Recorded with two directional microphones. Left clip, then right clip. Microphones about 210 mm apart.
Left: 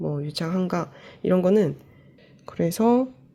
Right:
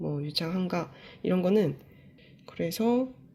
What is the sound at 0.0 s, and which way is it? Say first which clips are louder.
Speech: left 3 dB; 15° left (ahead or behind).